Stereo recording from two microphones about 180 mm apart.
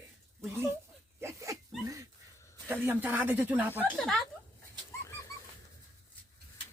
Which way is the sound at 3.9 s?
5° left (ahead or behind).